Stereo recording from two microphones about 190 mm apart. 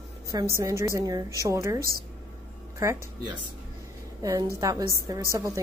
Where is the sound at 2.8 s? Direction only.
20° right (ahead or behind).